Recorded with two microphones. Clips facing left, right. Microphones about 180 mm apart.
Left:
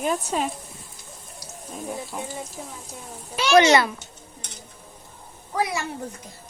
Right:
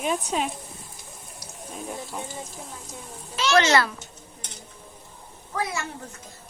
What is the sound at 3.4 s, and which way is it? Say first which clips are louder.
Speech: left 4 dB; 10° left (ahead or behind).